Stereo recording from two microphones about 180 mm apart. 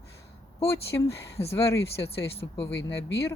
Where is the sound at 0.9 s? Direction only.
15° left (ahead or behind).